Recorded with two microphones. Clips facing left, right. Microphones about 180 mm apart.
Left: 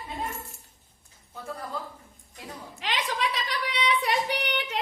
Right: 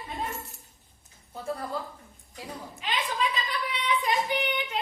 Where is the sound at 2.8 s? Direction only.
80° left.